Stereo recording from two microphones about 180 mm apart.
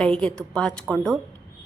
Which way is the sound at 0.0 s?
5° left (ahead or behind).